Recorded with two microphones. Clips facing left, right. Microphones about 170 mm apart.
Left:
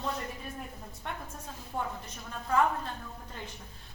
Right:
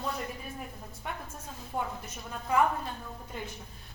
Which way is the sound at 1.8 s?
10° right (ahead or behind).